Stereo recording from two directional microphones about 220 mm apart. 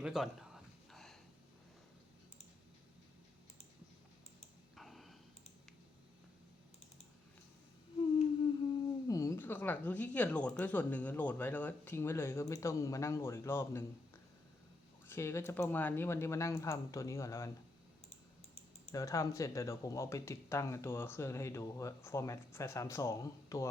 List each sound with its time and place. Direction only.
0.0 s a sound: centre (ahead or behind)
4.7 s clicking: centre (ahead or behind)
9.0 s speech: 15° left (ahead or behind)
15.0 s speech: 10° left (ahead or behind)
18.9 s speech: 15° left (ahead or behind)